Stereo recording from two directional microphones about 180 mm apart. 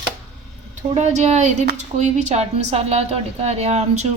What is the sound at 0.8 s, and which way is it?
A woman's voice, 40° right (ahead or behind).